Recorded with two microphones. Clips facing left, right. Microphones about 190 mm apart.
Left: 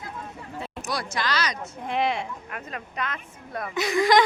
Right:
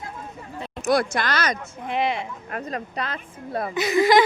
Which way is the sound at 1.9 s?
Centre (ahead or behind).